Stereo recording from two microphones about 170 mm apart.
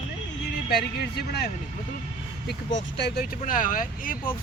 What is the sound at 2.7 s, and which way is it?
Speech, 90° left.